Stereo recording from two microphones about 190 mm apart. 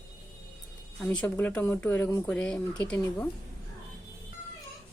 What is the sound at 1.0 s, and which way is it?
Speech, 5° left (ahead or behind).